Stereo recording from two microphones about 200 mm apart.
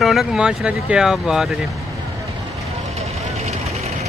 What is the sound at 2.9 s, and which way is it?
Vehicle, 30° right (ahead or behind).